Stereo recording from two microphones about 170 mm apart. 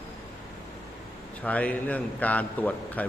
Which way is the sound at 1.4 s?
10° left (ahead or behind).